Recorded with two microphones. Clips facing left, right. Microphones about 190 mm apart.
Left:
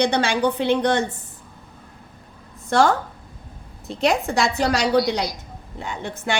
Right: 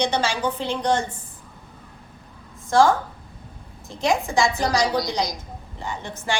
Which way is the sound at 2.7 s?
65° left (ahead or behind).